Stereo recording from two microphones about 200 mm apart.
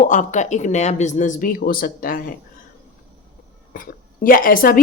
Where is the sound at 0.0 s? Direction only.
40° left (ahead or behind).